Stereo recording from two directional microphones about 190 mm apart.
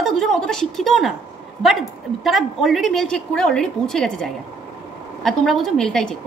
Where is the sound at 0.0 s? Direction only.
Centre (ahead or behind).